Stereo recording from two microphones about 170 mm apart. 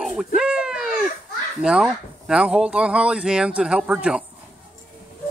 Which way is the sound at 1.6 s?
5° right (ahead or behind).